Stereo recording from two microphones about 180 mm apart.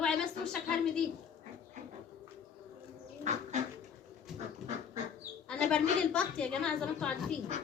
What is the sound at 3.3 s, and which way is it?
Bird, 40° right (ahead or behind).